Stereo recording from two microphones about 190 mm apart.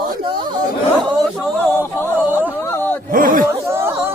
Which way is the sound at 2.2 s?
10° right (ahead or behind).